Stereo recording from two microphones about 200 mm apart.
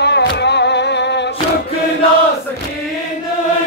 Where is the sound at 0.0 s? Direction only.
55° left (ahead or behind).